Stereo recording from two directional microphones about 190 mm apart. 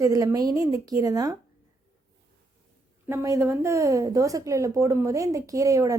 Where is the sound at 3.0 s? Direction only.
15° right (ahead or behind).